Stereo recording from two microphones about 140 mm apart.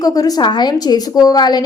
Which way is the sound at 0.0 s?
25° left (ahead or behind).